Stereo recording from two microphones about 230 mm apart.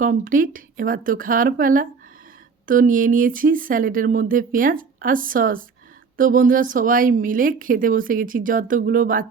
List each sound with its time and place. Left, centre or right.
0.0 s a woman's voice: right